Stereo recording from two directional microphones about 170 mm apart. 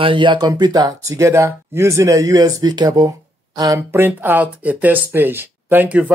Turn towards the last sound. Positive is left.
turn(degrees=-10)  # may be behind; listen again after turning